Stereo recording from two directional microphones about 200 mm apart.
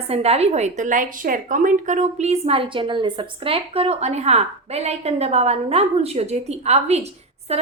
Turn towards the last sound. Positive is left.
turn(degrees=-30)  # may be behind; listen again after turning